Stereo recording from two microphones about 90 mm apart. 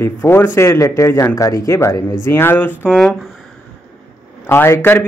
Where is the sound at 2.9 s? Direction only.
5° left (ahead or behind).